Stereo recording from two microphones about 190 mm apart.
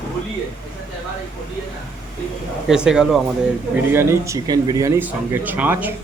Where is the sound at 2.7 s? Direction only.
5° right (ahead or behind).